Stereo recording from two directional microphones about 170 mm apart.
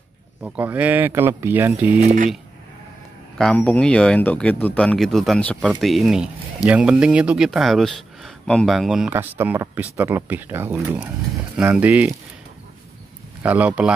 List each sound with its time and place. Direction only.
0.4 s speech: 10° right (ahead or behind)
2.0 s speech: 40° right (ahead or behind)
3.3 s speech: 5° left (ahead or behind)
9.1 s speech: 10° right (ahead or behind)
13.4 s speech: 10° right (ahead or behind)